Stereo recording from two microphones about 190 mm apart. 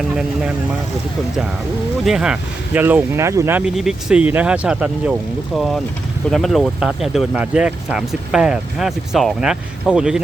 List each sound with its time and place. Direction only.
2.0 s speech: 5° right (ahead or behind)
3.8 s speech: 5° right (ahead or behind)